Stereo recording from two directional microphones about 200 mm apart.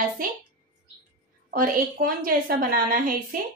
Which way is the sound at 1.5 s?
45° right (ahead or behind).